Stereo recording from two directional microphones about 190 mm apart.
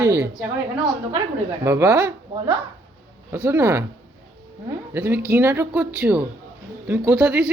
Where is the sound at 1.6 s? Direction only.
15° right (ahead or behind).